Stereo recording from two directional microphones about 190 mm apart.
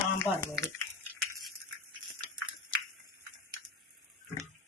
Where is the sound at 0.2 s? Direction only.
15° left (ahead or behind).